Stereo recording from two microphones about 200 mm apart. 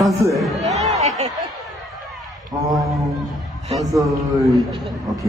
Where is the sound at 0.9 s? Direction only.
35° right (ahead or behind).